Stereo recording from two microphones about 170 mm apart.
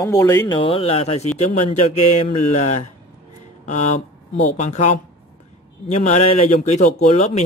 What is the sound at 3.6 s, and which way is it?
Speech, 45° left (ahead or behind).